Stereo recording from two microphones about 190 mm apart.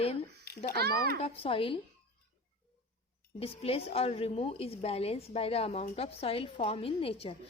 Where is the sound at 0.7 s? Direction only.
55° right (ahead or behind).